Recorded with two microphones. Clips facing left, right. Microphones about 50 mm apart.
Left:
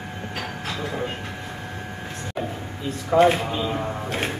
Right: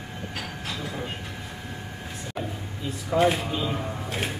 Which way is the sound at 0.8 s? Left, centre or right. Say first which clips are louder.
Left 7 dB; centre.